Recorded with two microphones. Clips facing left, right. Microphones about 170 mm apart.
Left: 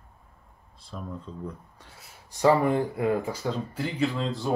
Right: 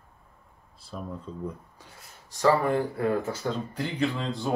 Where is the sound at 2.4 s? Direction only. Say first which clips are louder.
Left 1 dB; 15° left (ahead or behind).